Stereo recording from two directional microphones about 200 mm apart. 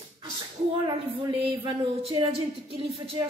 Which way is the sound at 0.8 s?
25° right (ahead or behind).